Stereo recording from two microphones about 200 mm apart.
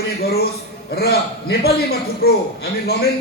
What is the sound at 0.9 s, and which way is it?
A man's voice, 50° left (ahead or behind).